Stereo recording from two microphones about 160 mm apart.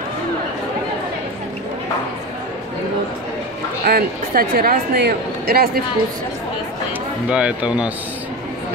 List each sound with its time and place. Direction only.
3.8 s speech: 65° right (ahead or behind)
7.2 s speech: 5° right (ahead or behind)